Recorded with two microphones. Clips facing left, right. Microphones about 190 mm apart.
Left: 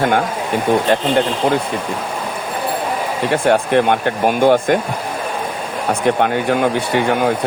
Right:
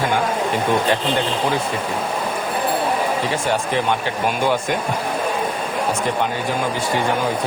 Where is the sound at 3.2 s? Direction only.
60° left (ahead or behind).